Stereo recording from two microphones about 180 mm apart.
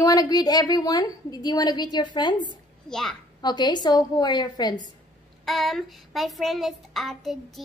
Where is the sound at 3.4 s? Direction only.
25° left (ahead or behind).